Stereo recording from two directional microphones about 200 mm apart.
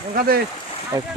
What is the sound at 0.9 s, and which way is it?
Speech, 15° right (ahead or behind).